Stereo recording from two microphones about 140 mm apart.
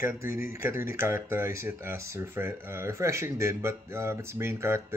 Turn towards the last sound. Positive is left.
turn(degrees=-20)  # may be behind; listen again after turning